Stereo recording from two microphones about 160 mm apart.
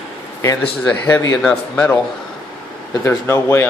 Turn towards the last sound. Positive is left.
turn(degrees=15)  # may be behind; listen again after turning